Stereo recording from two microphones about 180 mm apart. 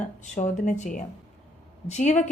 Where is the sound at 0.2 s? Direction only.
45° left (ahead or behind).